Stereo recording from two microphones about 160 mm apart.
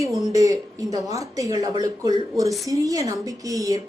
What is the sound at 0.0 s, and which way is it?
A woman's voice, 20° right (ahead or behind).